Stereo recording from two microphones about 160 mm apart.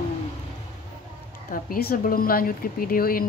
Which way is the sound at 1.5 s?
65° left (ahead or behind).